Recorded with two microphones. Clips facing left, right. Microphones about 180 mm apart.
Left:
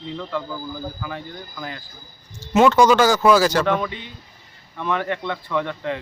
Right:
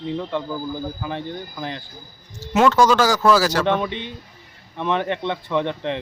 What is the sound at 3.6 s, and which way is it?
Speech, 25° right (ahead or behind).